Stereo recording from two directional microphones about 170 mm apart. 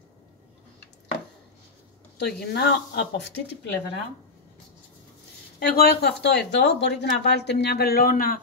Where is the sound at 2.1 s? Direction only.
75° left (ahead or behind).